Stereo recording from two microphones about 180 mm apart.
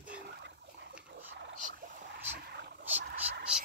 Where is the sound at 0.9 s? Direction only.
10° right (ahead or behind).